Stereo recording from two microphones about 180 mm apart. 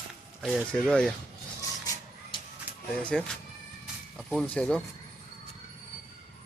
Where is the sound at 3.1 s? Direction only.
Centre (ahead or behind).